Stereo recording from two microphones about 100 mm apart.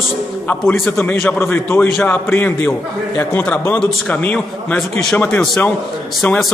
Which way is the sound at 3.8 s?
10° left (ahead or behind).